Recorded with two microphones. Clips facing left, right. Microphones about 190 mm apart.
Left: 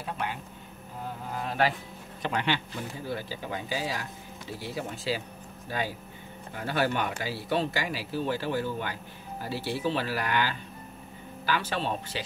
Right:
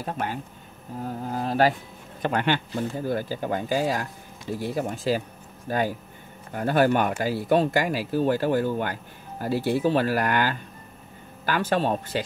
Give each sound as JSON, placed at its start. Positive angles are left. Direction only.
{"t": 0.0, "sound": "speech", "side_deg": -40}
{"t": 2.2, "sound": "speech", "side_deg": -50}